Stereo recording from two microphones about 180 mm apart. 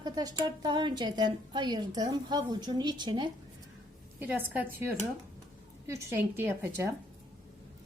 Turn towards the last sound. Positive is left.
turn(degrees=-10)  # may be behind; listen again after turning